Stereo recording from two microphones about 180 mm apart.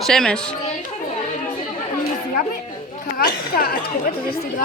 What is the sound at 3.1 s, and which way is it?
Speech, 55° left (ahead or behind).